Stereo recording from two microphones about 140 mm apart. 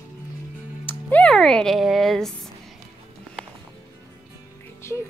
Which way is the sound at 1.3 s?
5° left (ahead or behind).